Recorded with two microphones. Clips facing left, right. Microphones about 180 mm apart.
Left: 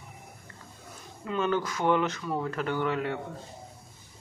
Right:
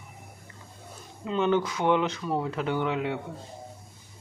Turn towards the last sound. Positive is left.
turn(degrees=-5)  # may be behind; listen again after turning